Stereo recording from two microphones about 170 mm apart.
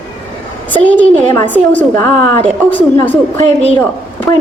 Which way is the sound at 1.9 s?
20° left (ahead or behind).